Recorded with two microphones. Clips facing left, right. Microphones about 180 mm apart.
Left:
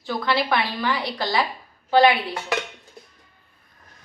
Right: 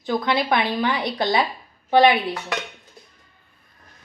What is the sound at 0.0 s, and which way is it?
Speech, 20° right (ahead or behind).